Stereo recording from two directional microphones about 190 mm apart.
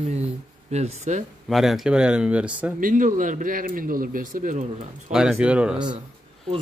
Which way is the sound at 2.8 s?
45° right (ahead or behind).